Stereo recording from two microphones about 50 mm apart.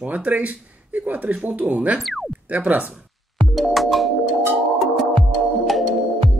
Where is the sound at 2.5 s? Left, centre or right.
Right.